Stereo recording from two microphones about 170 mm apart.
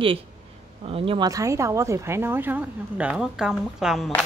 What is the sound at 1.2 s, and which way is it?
A woman's voice, 20° right (ahead or behind).